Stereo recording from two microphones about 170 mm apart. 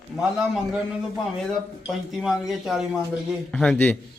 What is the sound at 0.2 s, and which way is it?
Speech, 5° right (ahead or behind).